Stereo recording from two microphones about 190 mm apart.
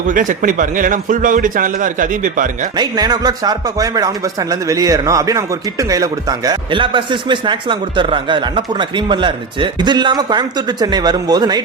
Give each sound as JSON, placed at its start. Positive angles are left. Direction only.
{"t": 0.1, "sound": "a man's voice", "side_deg": -45}
{"t": 2.7, "sound": "speech", "side_deg": -20}